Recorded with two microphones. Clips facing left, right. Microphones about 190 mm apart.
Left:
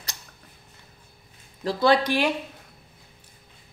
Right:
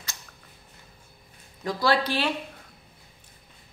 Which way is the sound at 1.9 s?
15° left (ahead or behind).